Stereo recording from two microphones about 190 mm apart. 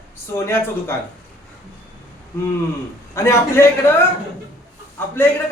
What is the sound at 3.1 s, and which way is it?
Speech, 15° left (ahead or behind).